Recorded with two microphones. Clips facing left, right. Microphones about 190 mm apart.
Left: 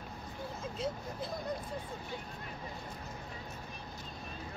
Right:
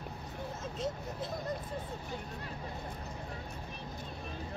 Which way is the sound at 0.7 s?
Centre (ahead or behind).